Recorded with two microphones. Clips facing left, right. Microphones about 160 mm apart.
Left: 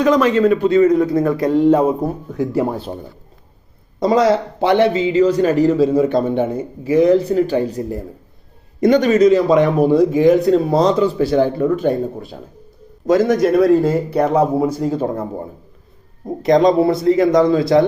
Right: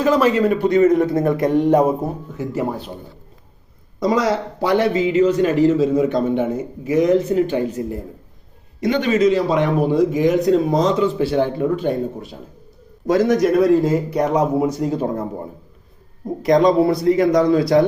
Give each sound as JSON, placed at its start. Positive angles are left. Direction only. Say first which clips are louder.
{"t": 0.0, "sound": "a man's voice", "louder": "left 2 dB", "side_deg": -5}
{"t": 0.9, "sound": "a man's voice", "louder": "left 1 dB", "side_deg": -25}
{"t": 2.4, "sound": "speech", "louder": "left 5 dB", "side_deg": 15}
{"t": 4.0, "sound": "a man's voice", "louder": "left 4 dB", "side_deg": 25}
{"t": 13.1, "sound": "speech", "louder": "left 2 dB", "side_deg": 25}
{"t": 16.4, "sound": "speech", "louder": "left 1 dB", "side_deg": 25}